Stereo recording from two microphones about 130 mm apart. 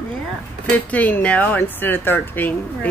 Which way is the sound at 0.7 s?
10° left (ahead or behind).